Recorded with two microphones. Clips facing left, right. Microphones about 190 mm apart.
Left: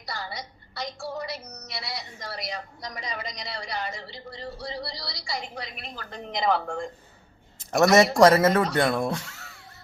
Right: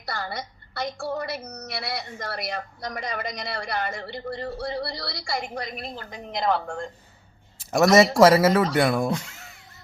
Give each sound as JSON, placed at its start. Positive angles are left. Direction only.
{"t": 0.0, "sound": "a woman's voice", "side_deg": -55}
{"t": 6.1, "sound": "speech", "side_deg": -5}
{"t": 9.1, "sound": "music", "side_deg": -15}